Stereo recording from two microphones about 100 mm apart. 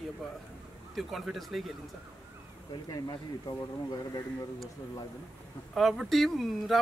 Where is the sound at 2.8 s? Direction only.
45° left (ahead or behind).